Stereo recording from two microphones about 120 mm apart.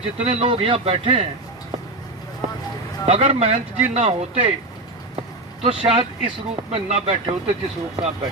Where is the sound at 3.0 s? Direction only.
60° right (ahead or behind).